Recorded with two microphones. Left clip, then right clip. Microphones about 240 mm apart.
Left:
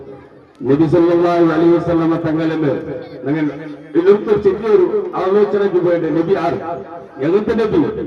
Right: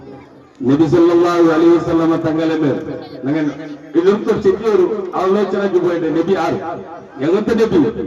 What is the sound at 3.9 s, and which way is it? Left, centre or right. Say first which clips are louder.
A man's voice: left 2 dB; right.